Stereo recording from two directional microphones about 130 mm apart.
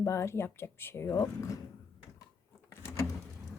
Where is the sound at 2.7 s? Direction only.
20° left (ahead or behind).